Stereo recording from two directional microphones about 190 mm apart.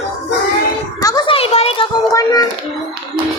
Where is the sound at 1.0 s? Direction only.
20° left (ahead or behind).